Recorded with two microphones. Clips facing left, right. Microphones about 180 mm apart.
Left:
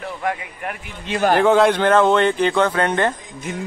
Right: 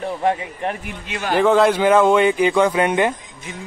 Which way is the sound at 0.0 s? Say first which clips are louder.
Right 5 dB; 30° right (ahead or behind).